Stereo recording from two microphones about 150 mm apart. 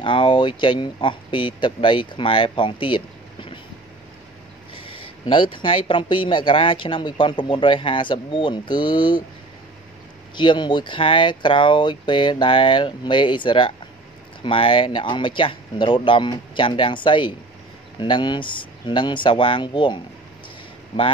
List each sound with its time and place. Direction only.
0.0 s a man's voice: 35° left (ahead or behind)
4.7 s a man's voice: 35° left (ahead or behind)
10.3 s a man's voice: 30° left (ahead or behind)